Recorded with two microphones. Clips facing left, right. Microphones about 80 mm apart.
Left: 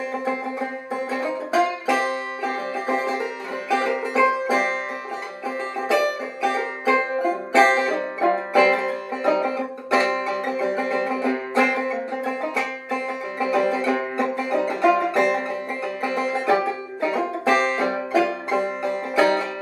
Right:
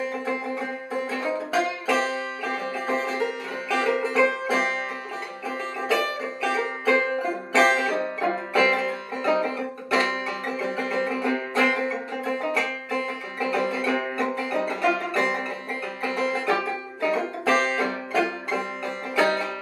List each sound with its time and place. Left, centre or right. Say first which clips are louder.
1.1 s music: left 4 dB; centre
5.9 s music: left 4 dB; centre
12.3 s banjo: right 3 dB; centre
17.0 s music: left 2 dB; centre